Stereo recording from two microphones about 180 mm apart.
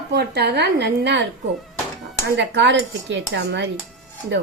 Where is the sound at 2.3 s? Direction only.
80° right.